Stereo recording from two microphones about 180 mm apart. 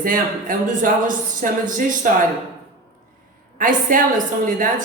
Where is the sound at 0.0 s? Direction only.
50° right (ahead or behind).